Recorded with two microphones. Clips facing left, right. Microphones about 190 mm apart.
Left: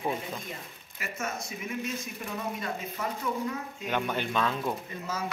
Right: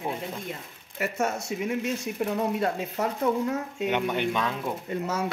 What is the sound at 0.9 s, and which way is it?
Speech, 65° right (ahead or behind).